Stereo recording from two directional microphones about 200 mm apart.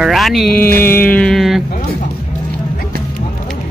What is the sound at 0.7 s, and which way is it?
Mantra, 10° left (ahead or behind).